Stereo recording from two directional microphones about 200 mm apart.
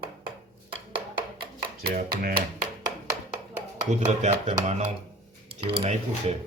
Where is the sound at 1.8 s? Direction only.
50° right (ahead or behind).